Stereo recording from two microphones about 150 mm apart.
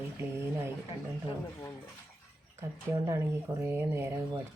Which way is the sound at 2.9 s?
20° right (ahead or behind).